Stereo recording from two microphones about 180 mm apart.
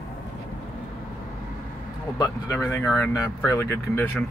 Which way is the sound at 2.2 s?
15° left (ahead or behind).